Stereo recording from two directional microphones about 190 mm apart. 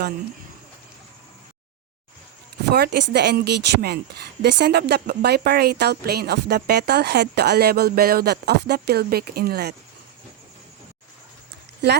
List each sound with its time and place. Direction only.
2.6 s speech: 60° right (ahead or behind)